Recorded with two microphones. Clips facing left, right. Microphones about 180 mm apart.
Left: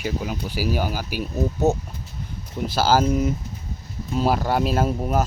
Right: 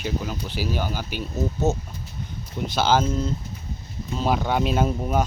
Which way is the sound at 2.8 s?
5° left (ahead or behind).